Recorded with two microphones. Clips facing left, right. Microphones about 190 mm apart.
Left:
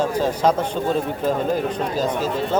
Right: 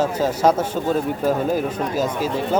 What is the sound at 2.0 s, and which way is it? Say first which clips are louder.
Speech: even; 10° right (ahead or behind).